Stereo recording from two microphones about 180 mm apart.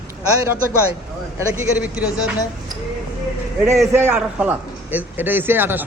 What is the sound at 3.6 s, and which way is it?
A man's voice, 15° right (ahead or behind).